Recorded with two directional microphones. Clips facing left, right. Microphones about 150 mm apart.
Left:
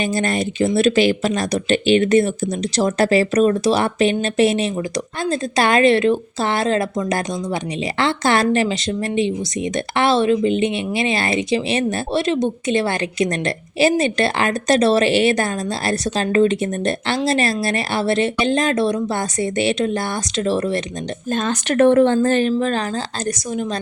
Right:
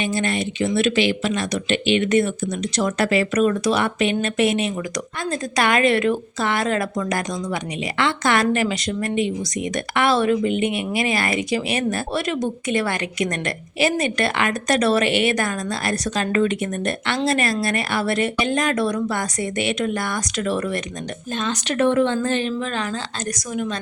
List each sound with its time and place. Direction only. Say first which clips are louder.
0.0 s speech: left 3 dB; 40° left (ahead or behind)
21.3 s speech: left 5 dB; 45° left (ahead or behind); by 23.6 s 30° left (ahead or behind)